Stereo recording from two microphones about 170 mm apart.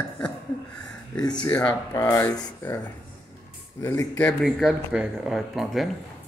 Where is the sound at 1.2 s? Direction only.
25° left (ahead or behind).